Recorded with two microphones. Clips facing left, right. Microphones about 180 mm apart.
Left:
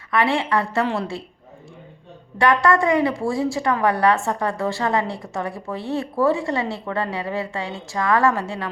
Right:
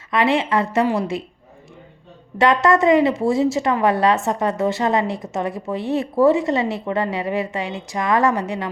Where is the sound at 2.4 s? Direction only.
20° right (ahead or behind).